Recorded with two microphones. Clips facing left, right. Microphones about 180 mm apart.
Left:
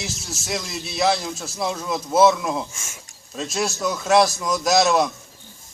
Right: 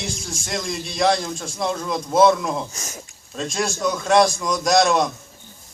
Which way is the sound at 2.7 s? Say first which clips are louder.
Right 6 dB; 40° right (ahead or behind).